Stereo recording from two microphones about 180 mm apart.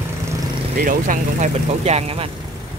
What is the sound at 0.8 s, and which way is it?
Speech, 50° right (ahead or behind).